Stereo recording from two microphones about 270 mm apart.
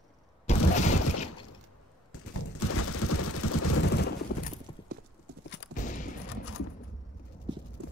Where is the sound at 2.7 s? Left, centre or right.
Left.